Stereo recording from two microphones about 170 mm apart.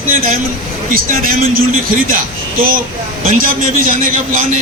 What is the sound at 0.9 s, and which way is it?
A man's voice, 55° right (ahead or behind).